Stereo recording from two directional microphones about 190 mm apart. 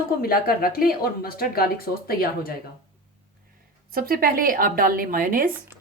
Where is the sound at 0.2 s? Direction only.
50° left (ahead or behind).